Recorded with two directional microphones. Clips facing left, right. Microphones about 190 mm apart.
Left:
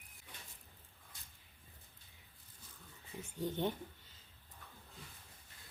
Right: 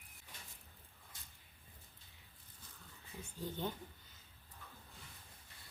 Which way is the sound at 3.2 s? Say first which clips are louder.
Left 5 dB; 20° left (ahead or behind).